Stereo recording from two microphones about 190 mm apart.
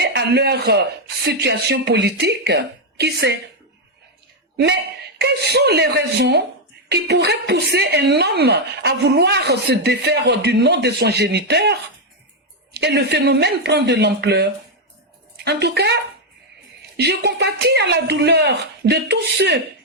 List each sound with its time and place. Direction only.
0.0 s speech: 60° right (ahead or behind)
4.5 s a woman's voice: 60° right (ahead or behind)
17.0 s a woman's voice: 60° right (ahead or behind)